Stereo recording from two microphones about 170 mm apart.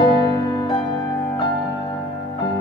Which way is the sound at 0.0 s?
25° left (ahead or behind).